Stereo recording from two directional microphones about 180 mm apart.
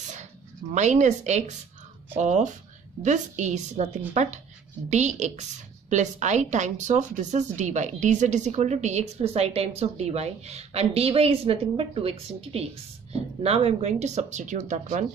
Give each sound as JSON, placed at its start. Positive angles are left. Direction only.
{"t": 0.7, "sound": "a woman's voice", "side_deg": -40}